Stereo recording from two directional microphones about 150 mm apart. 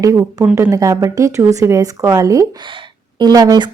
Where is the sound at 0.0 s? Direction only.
20° right (ahead or behind).